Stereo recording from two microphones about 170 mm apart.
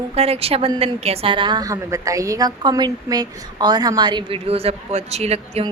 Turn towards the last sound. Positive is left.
turn(degrees=-35)  # may be behind; listen again after turning